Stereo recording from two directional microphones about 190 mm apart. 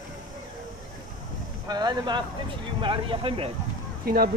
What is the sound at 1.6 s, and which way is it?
Speech, 20° right (ahead or behind).